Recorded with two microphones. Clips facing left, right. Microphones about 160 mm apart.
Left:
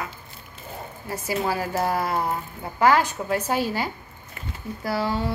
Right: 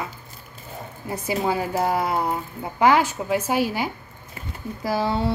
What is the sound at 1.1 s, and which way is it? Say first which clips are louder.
A woman's voice: right 2 dB; 20° right (ahead or behind).